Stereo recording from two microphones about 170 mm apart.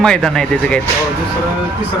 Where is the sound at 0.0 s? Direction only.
5° left (ahead or behind).